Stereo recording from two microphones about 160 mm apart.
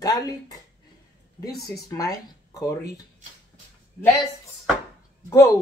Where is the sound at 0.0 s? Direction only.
25° left (ahead or behind).